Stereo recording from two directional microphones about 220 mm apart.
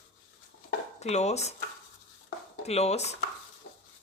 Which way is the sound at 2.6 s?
30° left (ahead or behind).